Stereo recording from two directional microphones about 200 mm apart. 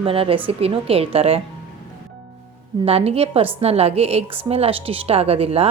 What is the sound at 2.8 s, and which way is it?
A woman's voice, 30° right (ahead or behind).